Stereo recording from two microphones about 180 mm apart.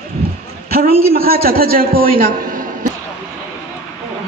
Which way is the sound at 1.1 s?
55° right (ahead or behind).